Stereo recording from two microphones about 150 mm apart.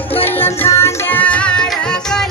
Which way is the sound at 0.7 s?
20° left (ahead or behind).